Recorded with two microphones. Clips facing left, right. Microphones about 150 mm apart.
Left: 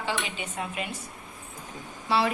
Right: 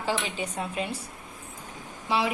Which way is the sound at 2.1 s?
15° right (ahead or behind).